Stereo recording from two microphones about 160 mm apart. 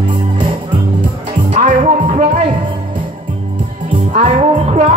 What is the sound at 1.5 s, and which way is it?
Music, 55° right (ahead or behind).